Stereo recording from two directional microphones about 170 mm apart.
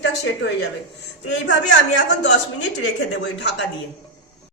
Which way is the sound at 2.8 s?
90° left.